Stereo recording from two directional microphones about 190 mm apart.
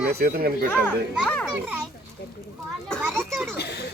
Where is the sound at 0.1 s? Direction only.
55° right (ahead or behind).